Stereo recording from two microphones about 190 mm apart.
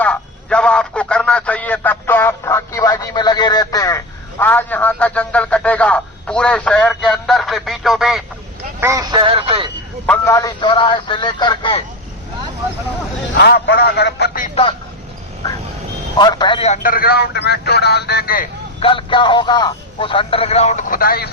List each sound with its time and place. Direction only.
0.0 s a man's voice: 5° left (ahead or behind)
8.8 s speech: 15° right (ahead or behind)
10.1 s speech: 15° left (ahead or behind)
10.6 s speech: 25° left (ahead or behind)
13.3 s a man's voice: 55° left (ahead or behind)
14.5 s speech: 30° left (ahead or behind)
16.1 s a man's voice: 25° left (ahead or behind); by 18.4 s 50° left (ahead or behind)
18.8 s speech: 25° left (ahead or behind); by 21.2 s 50° left (ahead or behind)